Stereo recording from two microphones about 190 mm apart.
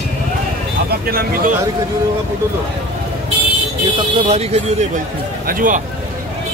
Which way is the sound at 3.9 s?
30° right (ahead or behind).